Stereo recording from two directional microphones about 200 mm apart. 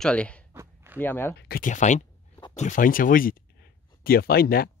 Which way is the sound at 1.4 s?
45° left (ahead or behind).